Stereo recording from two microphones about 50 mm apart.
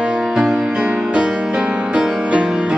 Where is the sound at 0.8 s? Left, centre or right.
Centre.